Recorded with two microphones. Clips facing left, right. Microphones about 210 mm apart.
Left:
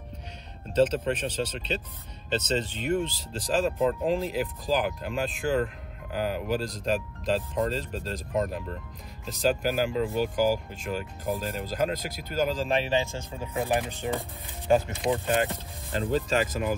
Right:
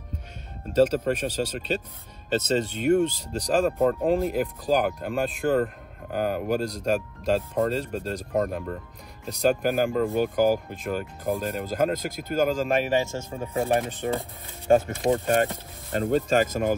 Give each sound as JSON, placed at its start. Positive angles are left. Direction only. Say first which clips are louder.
{"t": 0.7, "sound": "speech", "louder": "right 3 dB", "side_deg": -45}